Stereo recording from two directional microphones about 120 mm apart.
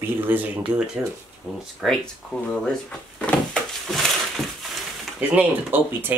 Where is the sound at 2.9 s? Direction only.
10° left (ahead or behind).